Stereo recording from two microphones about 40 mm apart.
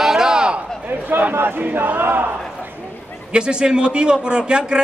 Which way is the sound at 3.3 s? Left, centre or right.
Right.